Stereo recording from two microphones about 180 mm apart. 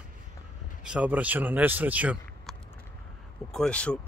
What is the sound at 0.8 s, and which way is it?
Speech, 5° right (ahead or behind).